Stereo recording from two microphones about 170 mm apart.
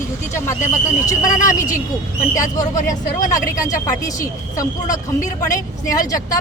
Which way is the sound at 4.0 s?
20° left (ahead or behind).